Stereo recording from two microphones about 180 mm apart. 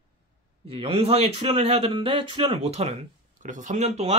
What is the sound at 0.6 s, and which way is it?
A man's voice, 30° right (ahead or behind).